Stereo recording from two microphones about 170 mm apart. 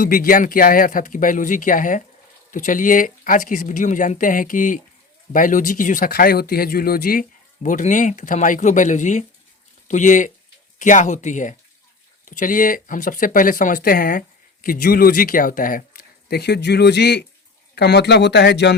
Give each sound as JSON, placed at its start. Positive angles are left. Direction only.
{"t": 0.0, "sound": "speech", "side_deg": 55}